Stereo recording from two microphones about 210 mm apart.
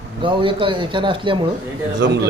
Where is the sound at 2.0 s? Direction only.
60° right (ahead or behind).